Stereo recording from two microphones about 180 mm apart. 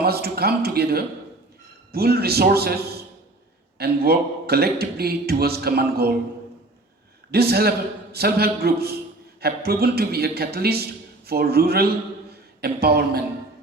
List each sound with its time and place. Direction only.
0.0 s a man's voice: 60° right (ahead or behind)
7.3 s a man's voice: 60° right (ahead or behind)